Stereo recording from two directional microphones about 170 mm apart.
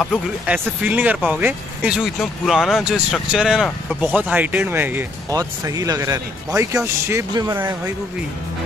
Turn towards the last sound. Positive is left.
turn(degrees=-15)  # may be behind; listen again after turning